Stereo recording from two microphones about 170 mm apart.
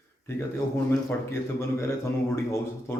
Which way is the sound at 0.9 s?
15° left (ahead or behind).